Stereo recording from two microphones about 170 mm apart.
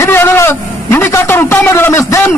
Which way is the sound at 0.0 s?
15° left (ahead or behind).